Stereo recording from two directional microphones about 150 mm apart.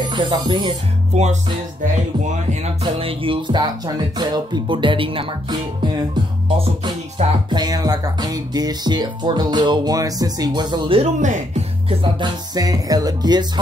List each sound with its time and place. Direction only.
0.1 s speech: 30° right (ahead or behind)
1.1 s music: 50° right (ahead or behind)
2.2 s speech: 40° right (ahead or behind)
6.6 s music: 35° right (ahead or behind)
11.1 s speech: 55° right (ahead or behind)
11.9 s music: 35° right (ahead or behind)